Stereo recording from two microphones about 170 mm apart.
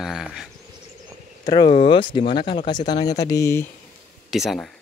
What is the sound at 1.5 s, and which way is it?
Speech, 25° left (ahead or behind).